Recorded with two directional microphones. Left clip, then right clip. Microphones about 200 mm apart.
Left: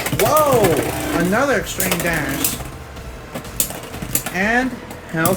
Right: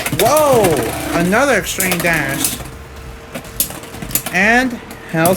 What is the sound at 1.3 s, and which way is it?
Speech, 45° right (ahead or behind).